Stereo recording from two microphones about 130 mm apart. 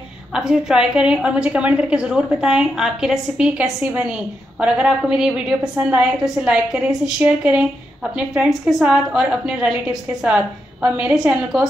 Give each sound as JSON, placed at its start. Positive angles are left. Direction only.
{"t": 0.3, "sound": "a woman's voice", "side_deg": -5}